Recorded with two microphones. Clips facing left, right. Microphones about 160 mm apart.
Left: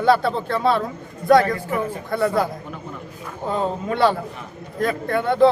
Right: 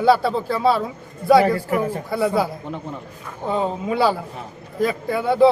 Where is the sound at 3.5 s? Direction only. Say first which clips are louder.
Right 1 dB; 5° right (ahead or behind).